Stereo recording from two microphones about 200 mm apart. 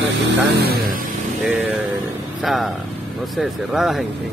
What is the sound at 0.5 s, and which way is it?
Speech, 50° right (ahead or behind).